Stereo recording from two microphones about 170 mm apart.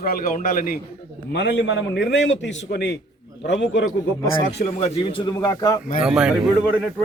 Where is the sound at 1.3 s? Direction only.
80° left.